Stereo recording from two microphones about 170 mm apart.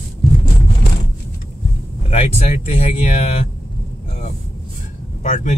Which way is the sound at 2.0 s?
40° left (ahead or behind).